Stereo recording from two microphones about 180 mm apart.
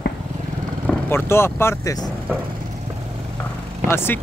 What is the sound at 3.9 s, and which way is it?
Speech, 15° left (ahead or behind).